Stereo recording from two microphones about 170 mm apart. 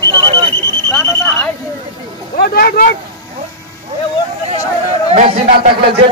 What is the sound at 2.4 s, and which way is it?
Speech, 65° left (ahead or behind).